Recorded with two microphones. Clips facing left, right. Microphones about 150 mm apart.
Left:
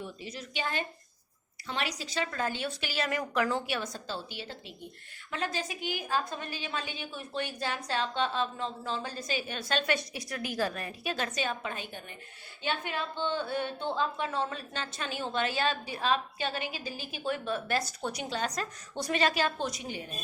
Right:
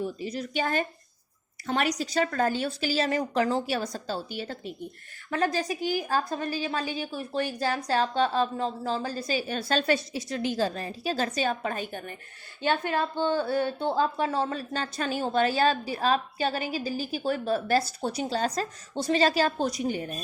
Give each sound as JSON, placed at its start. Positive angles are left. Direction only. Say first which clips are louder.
{"t": 0.0, "sound": "a woman's voice", "louder": "right 9 dB", "side_deg": -40}